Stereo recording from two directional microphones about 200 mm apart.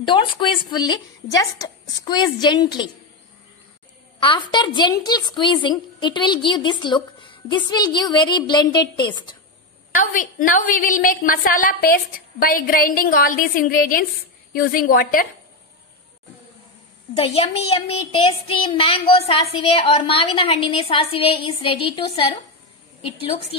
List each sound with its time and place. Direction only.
0.0 s a woman's voice: 25° left (ahead or behind)
4.2 s a woman's voice: 25° left (ahead or behind)
9.9 s a woman's voice: 40° left (ahead or behind)
17.1 s a woman's voice: 30° left (ahead or behind)